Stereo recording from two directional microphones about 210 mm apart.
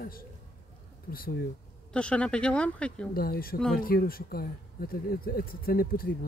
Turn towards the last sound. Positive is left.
turn(degrees=45)  # may be behind; listen again after turning